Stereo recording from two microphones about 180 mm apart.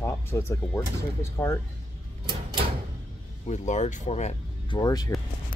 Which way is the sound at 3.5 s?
40° left (ahead or behind).